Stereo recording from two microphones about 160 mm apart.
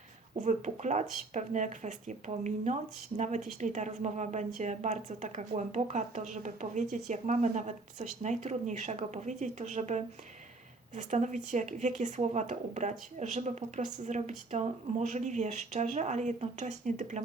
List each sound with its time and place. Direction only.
0.4 s speech: 50° right (ahead or behind)